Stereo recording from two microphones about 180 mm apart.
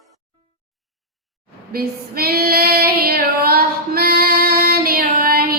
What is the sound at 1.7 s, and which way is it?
Female singing, 55° right (ahead or behind).